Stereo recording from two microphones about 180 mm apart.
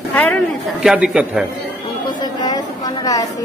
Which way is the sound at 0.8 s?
5° right (ahead or behind).